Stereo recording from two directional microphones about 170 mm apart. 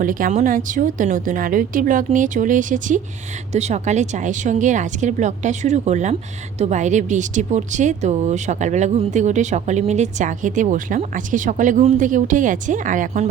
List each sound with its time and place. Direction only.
0.0 s speech: 50° right (ahead or behind)